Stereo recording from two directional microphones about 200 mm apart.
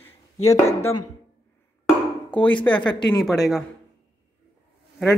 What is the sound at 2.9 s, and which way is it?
Speech, 20° left (ahead or behind).